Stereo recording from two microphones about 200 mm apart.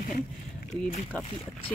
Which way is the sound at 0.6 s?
40° left (ahead or behind).